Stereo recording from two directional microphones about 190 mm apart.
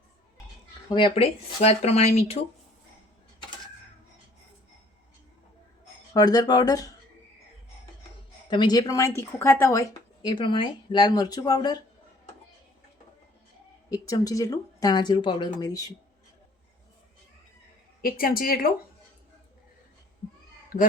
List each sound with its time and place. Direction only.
0.9 s speech: 25° left (ahead or behind)
6.1 s speech: 20° left (ahead or behind)
8.4 s speech: 20° left (ahead or behind)
13.9 s speech: 20° left (ahead or behind)
18.0 s a woman's voice: 50° left (ahead or behind)